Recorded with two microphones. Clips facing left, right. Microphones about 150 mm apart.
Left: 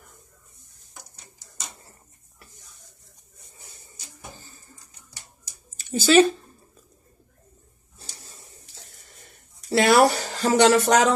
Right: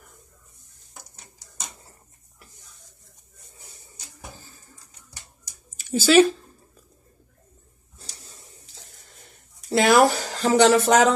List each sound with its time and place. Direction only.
5.8 s speech: 5° right (ahead or behind)
9.7 s speech: 5° left (ahead or behind)